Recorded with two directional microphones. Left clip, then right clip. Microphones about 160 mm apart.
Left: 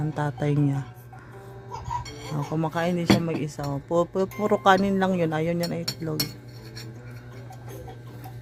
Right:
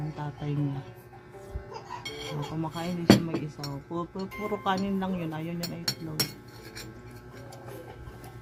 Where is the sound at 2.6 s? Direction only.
50° left (ahead or behind).